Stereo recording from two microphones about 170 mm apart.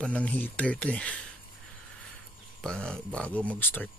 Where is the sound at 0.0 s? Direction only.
5° left (ahead or behind).